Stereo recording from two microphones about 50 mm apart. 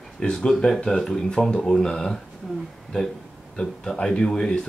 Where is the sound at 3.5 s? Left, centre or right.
Centre.